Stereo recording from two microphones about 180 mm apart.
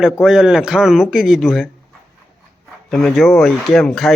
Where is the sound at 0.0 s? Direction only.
5° right (ahead or behind).